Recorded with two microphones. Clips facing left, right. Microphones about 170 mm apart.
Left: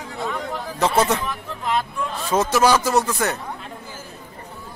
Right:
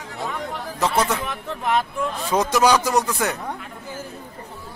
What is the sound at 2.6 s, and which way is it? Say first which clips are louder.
Speech: even; 15° right (ahead or behind).